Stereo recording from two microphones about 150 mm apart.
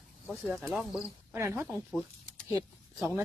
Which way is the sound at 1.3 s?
15° right (ahead or behind).